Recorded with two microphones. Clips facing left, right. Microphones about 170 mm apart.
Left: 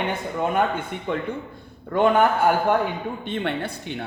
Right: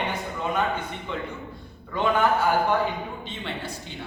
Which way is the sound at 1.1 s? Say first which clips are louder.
Left 7 dB; 55° left (ahead or behind).